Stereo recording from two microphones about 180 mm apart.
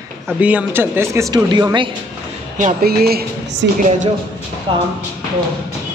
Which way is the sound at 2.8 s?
60° right (ahead or behind).